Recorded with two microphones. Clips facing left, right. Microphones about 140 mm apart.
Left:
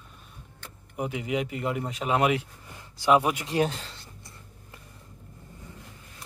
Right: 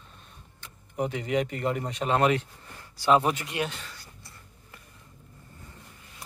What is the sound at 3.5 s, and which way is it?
Writing, 35° left (ahead or behind).